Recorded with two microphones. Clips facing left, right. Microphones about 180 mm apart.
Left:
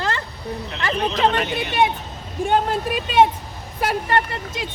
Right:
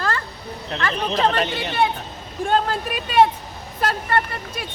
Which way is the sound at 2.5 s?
20° left (ahead or behind).